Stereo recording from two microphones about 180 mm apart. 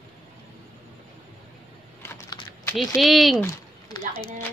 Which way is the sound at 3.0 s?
Centre (ahead or behind).